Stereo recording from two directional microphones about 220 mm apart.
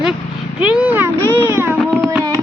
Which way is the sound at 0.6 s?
5° right (ahead or behind).